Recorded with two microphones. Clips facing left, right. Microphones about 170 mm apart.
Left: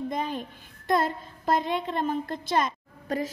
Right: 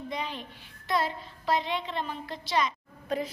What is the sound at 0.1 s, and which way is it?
A woman's voice, 45° left (ahead or behind).